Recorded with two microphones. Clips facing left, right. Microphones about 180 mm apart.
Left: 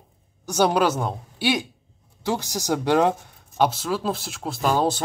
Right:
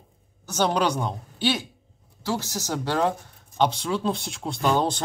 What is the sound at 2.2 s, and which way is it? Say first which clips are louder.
Speech: left 4 dB; 15° left (ahead or behind).